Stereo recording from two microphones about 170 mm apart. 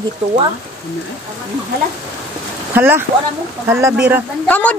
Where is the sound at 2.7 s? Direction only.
10° right (ahead or behind).